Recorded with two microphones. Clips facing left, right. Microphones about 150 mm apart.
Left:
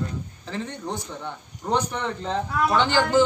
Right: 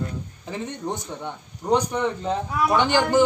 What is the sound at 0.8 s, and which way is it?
Speech, 20° right (ahead or behind).